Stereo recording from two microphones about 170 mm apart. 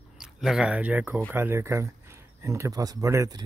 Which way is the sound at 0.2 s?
5° right (ahead or behind).